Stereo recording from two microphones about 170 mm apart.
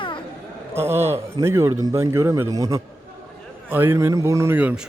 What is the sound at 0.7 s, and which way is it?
Speech, 15° right (ahead or behind).